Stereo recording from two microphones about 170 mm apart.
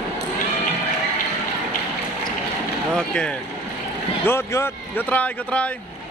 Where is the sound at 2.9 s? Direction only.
5° left (ahead or behind).